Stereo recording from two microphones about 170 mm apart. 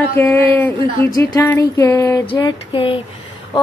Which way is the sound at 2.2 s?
25° left (ahead or behind).